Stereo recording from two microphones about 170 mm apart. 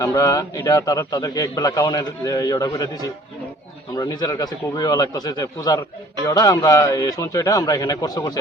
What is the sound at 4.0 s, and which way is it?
A man's voice, 20° left (ahead or behind).